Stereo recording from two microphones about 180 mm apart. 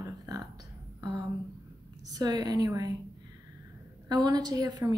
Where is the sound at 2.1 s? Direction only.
20° right (ahead or behind).